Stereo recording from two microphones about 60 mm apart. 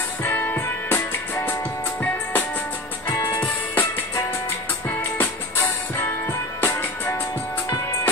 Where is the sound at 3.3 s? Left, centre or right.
Left.